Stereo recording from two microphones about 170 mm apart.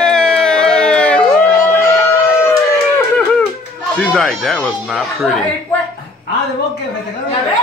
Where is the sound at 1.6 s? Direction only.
15° left (ahead or behind).